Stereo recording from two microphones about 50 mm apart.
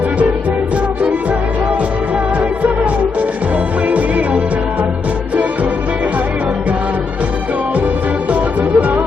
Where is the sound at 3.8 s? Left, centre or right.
Right.